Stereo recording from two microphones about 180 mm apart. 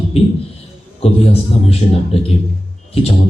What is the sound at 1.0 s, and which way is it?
Speech, 30° left (ahead or behind).